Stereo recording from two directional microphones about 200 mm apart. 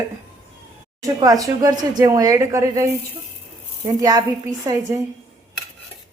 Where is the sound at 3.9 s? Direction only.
20° right (ahead or behind).